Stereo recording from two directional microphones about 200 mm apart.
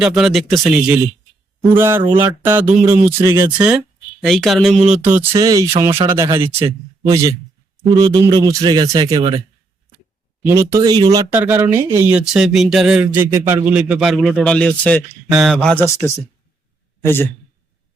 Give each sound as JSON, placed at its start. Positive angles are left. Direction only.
{"t": 0.0, "sound": "a man's voice", "side_deg": 0}
{"t": 1.7, "sound": "speech", "side_deg": -10}
{"t": 4.2, "sound": "a man's voice", "side_deg": 0}
{"t": 10.4, "sound": "a man's voice", "side_deg": -10}
{"t": 15.9, "sound": "a man's voice", "side_deg": 15}